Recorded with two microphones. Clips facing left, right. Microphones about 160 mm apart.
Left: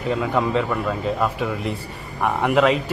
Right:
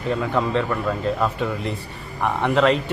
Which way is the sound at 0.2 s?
5° left (ahead or behind).